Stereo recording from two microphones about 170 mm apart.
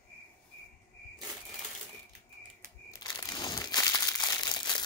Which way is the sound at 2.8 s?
25° left (ahead or behind).